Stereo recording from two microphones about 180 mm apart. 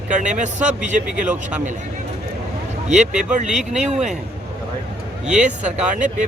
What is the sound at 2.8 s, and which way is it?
Speech, 40° right (ahead or behind).